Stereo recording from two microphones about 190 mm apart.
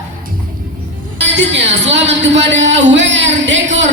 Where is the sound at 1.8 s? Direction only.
70° right (ahead or behind).